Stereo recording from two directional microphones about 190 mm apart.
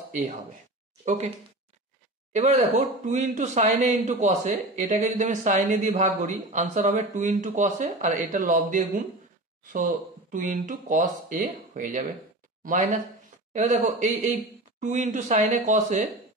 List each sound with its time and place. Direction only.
1.0 s speech: 40° right (ahead or behind)
2.3 s speech: 35° right (ahead or behind)